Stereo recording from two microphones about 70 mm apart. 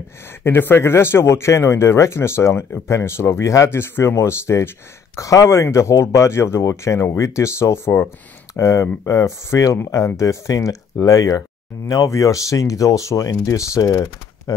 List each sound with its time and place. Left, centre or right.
0.4 s speech: left